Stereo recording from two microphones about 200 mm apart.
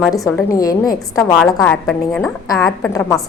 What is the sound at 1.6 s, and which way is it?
Speech, 5° left (ahead or behind).